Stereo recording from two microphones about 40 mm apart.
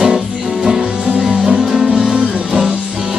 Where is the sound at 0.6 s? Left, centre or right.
Centre.